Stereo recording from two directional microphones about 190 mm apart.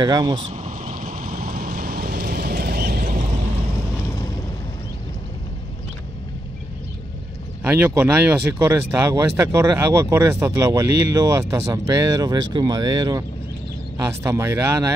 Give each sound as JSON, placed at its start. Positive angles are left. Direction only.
{"t": 0.0, "sound": "speech", "side_deg": -20}
{"t": 0.5, "sound": "vehicle", "side_deg": -40}
{"t": 7.6, "sound": "speech", "side_deg": -10}